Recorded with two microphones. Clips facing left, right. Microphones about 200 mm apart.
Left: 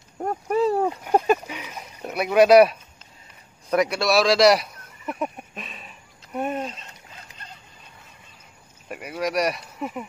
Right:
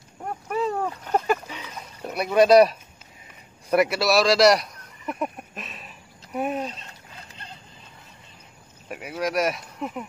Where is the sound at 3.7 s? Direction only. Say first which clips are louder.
Right 1 dB; 5° right (ahead or behind).